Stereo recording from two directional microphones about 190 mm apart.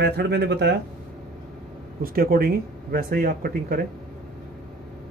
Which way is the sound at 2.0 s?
50° right (ahead or behind).